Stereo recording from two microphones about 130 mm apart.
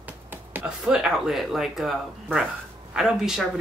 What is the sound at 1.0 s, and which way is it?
Speech, 5° right (ahead or behind).